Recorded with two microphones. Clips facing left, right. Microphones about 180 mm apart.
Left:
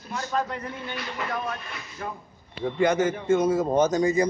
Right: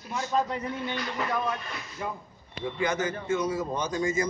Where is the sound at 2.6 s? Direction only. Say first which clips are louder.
Left 6 dB; 55° left (ahead or behind); by 4.3 s 35° left (ahead or behind).